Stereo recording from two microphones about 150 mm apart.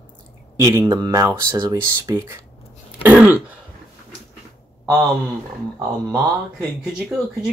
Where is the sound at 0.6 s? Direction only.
20° right (ahead or behind).